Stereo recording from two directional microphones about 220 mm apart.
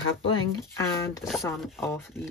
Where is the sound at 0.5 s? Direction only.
15° left (ahead or behind).